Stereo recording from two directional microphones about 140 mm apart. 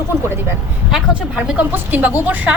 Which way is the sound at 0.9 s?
5° right (ahead or behind).